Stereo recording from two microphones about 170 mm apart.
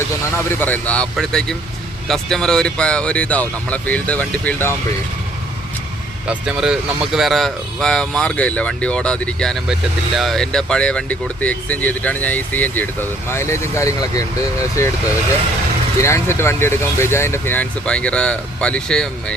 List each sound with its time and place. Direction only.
0.6 s speech: 10° left (ahead or behind)
6.2 s speech: 5° right (ahead or behind); by 14.9 s 20° left (ahead or behind)
16.0 s speech: 15° left (ahead or behind)